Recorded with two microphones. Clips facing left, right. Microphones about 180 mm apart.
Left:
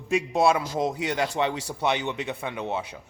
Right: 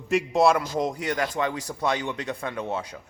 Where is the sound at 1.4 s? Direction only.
20° left (ahead or behind).